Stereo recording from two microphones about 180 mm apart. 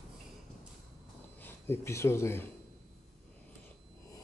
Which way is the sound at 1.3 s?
10° left (ahead or behind).